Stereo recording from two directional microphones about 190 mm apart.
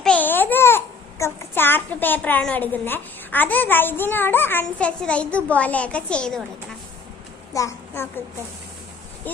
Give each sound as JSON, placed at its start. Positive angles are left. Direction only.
{"t": 0.0, "sound": "babbling", "side_deg": 5}
{"t": 1.2, "sound": "a woman's voice", "side_deg": 10}
{"t": 7.5, "sound": "a child's voice", "side_deg": 15}